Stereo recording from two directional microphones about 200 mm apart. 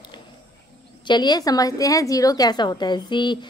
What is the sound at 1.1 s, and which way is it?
A woman's voice, 20° left (ahead or behind).